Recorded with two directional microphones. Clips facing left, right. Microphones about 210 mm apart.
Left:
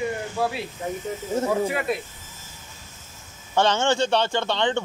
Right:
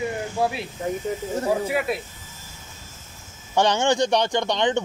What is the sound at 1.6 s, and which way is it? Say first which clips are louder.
Speech: right 1 dB; 5° right (ahead or behind).